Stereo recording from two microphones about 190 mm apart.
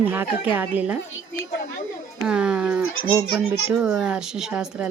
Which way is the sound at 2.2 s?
5° right (ahead or behind).